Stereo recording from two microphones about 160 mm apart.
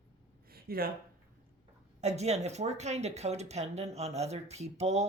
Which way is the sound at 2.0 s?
45° right (ahead or behind).